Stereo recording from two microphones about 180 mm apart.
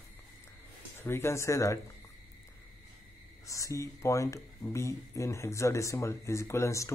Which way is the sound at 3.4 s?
15° left (ahead or behind).